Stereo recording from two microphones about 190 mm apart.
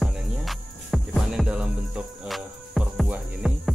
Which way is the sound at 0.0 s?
Centre (ahead or behind).